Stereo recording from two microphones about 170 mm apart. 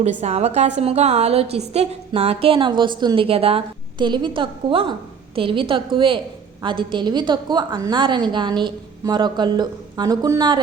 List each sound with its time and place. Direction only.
0.0 s a woman's voice: 40° right (ahead or behind); by 10.6 s 25° right (ahead or behind)